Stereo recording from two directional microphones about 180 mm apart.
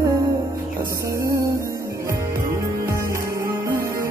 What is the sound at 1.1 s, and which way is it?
Music, 15° right (ahead or behind).